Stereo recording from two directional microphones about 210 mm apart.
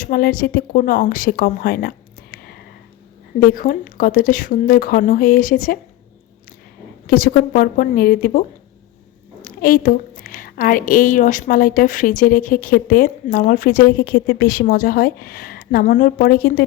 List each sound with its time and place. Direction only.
0.0 s speech: 45° left (ahead or behind)
7.1 s a woman's voice: 40° left (ahead or behind)